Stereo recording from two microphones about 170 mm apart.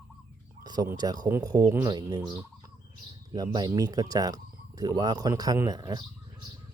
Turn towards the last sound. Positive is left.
turn(degrees=-25)  # may be behind; listen again after turning